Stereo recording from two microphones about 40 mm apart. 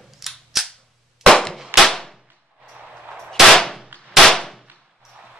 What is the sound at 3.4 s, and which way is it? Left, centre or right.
Gunshot, centre.